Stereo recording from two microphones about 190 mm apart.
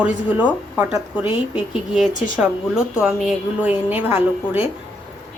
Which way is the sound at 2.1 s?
40° left (ahead or behind).